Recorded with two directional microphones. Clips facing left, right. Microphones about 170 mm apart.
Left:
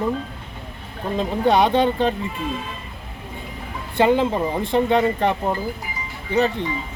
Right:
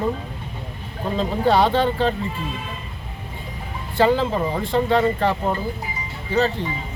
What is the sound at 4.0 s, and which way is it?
Speech, 20° left (ahead or behind).